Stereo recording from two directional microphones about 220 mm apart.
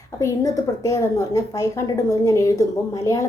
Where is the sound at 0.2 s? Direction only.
15° left (ahead or behind).